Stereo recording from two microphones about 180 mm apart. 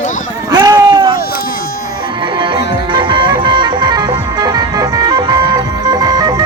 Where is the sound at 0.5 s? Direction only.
20° right (ahead or behind).